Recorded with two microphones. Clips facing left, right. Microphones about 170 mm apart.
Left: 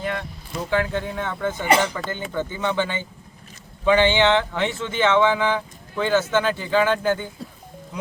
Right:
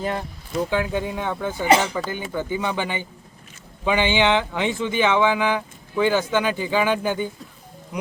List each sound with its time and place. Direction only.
0.0 s speech: 35° right (ahead or behind)
0.7 s speech: 15° right (ahead or behind)